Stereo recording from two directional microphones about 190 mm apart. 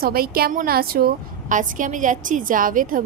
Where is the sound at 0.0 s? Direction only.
50° right (ahead or behind).